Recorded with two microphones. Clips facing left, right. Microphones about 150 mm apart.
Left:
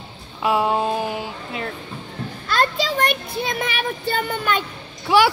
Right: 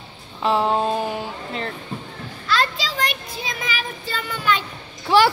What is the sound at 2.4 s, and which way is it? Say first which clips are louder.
Child singing: left 2 dB; 50° left (ahead or behind).